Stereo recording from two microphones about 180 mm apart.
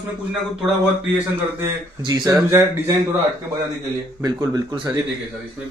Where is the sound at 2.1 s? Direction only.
20° right (ahead or behind).